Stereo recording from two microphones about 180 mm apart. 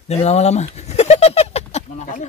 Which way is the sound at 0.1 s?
35° left (ahead or behind).